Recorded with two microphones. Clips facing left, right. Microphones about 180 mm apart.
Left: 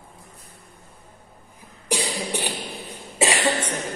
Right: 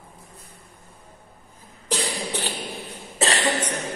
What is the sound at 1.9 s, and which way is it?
Cough, 15° left (ahead or behind).